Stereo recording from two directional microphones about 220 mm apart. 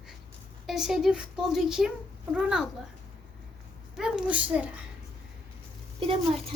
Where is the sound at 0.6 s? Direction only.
Centre (ahead or behind).